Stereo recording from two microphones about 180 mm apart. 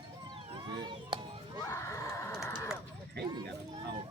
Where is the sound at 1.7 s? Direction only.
15° left (ahead or behind).